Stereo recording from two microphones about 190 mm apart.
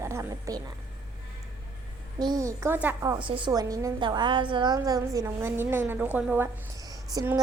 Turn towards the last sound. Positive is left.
turn(degrees=-15)  # may be behind; listen again after turning